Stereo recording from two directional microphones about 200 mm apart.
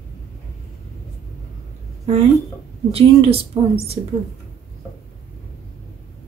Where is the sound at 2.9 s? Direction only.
30° right (ahead or behind).